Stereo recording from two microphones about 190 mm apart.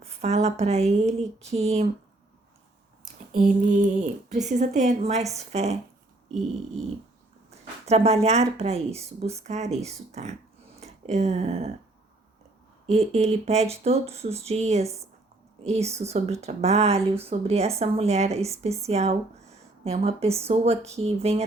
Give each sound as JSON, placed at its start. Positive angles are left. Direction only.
{"t": 0.0, "sound": "a woman's voice", "side_deg": -35}
{"t": 3.3, "sound": "a woman's voice", "side_deg": -40}
{"t": 7.9, "sound": "a woman's voice", "side_deg": -35}
{"t": 12.9, "sound": "a woman's voice", "side_deg": -35}